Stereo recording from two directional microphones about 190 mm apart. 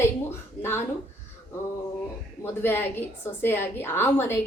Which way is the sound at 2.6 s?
10° left (ahead or behind).